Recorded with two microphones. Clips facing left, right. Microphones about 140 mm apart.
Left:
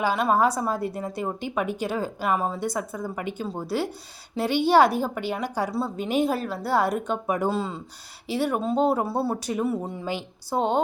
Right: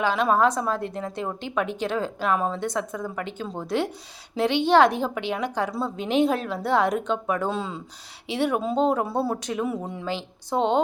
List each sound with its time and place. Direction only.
0.0 s a woman's voice: 5° left (ahead or behind)